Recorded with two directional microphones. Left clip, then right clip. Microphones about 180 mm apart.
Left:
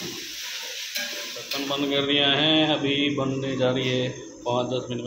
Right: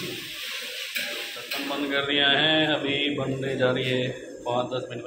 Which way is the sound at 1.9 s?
30° left (ahead or behind).